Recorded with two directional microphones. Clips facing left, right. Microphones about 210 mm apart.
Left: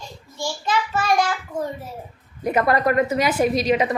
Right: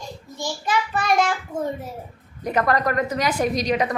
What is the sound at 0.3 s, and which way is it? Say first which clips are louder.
Child singing: left 1 dB; 15° right (ahead or behind).